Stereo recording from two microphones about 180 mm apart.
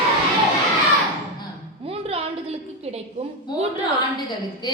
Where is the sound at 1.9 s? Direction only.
30° right (ahead or behind).